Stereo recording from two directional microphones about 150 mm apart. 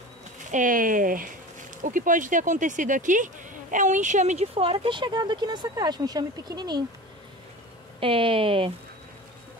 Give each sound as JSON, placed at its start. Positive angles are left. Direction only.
{"t": 0.5, "sound": "speech", "side_deg": -60}
{"t": 8.0, "sound": "speech", "side_deg": -35}